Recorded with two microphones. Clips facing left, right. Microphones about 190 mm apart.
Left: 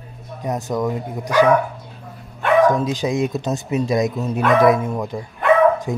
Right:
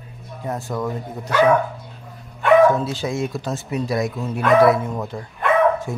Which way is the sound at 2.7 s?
15° left (ahead or behind).